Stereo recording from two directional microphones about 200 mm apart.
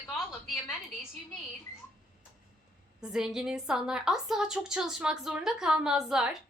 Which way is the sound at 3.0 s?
5° right (ahead or behind).